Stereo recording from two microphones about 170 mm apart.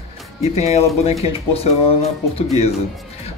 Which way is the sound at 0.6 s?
40° left (ahead or behind).